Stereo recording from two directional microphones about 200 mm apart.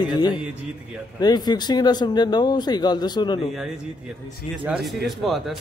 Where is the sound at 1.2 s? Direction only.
20° left (ahead or behind).